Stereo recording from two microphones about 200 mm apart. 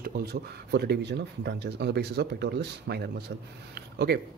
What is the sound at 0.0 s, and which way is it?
Speech, 50° right (ahead or behind).